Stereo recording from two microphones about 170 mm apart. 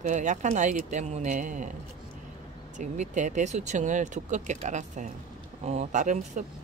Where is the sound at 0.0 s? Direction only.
45° right (ahead or behind).